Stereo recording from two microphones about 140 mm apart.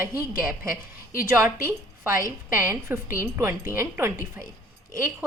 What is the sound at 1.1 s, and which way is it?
A woman's voice, 20° right (ahead or behind).